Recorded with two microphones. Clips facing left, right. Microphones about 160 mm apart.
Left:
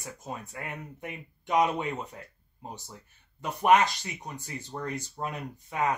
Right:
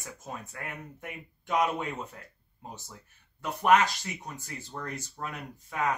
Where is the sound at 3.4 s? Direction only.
20° left (ahead or behind).